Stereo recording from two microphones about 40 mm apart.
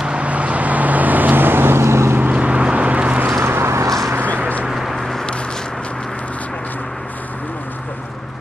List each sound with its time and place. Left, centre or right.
0.2 s vehicle: right
2.3 s vehicle: right
3.4 s vehicle: right
4.6 s a sound: centre